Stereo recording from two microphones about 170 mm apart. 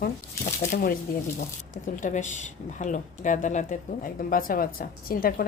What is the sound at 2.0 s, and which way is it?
Speech, 45° left (ahead or behind).